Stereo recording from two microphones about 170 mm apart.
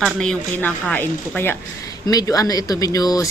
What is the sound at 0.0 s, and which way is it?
Speech, 5° left (ahead or behind).